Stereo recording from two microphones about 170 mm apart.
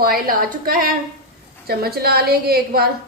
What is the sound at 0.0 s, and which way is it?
A woman's voice, 60° right (ahead or behind).